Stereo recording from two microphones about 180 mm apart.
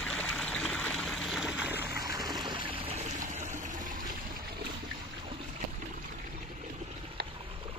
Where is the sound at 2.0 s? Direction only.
20° right (ahead or behind); by 3.5 s 40° right (ahead or behind).